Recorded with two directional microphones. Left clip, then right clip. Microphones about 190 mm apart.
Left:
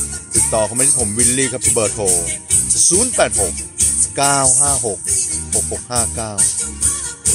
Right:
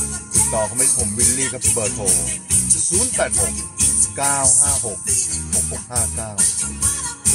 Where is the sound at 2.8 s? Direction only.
45° left (ahead or behind).